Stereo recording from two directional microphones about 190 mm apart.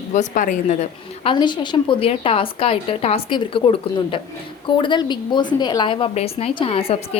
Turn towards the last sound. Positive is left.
turn(degrees=30)  # may be behind; listen again after turning